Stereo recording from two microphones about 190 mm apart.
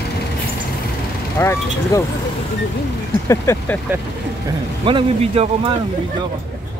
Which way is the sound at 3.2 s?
15° left (ahead or behind).